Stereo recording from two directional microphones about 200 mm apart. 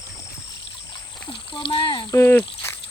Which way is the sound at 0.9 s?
25° left (ahead or behind).